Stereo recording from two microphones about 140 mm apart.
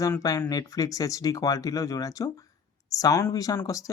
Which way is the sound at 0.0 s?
25° left (ahead or behind).